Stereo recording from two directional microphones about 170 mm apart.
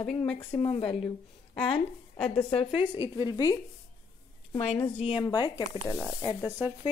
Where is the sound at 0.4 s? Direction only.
35° left (ahead or behind).